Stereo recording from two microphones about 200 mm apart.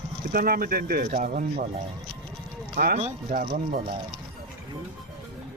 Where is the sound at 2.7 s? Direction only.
50° right (ahead or behind).